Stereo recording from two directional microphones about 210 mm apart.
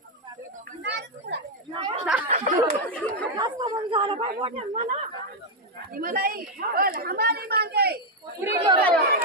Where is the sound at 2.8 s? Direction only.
5° left (ahead or behind).